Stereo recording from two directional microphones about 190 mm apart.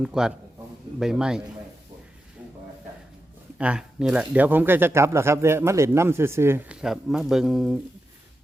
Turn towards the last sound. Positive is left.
turn(degrees=0)  # may be behind; listen again after turning